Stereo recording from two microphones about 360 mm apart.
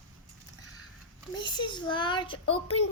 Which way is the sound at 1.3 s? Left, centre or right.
Centre.